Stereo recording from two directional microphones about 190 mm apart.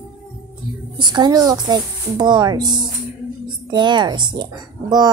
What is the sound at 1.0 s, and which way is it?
Speech, 20° right (ahead or behind).